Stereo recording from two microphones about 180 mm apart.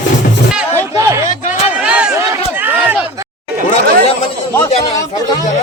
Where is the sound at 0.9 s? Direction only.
15° right (ahead or behind).